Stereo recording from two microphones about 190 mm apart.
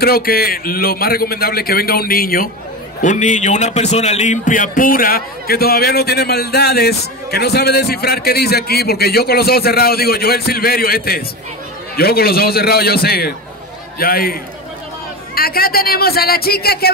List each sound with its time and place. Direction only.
0.0 s a man's voice: 55° left (ahead or behind)
3.0 s a man's voice: 40° left (ahead or behind)